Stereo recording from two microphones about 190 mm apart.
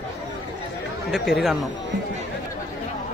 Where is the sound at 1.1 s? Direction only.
Centre (ahead or behind).